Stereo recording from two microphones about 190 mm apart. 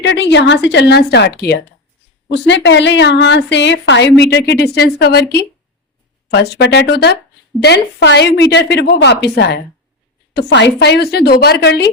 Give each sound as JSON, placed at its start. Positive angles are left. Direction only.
{"t": 0.0, "sound": "a woman's voice", "side_deg": 70}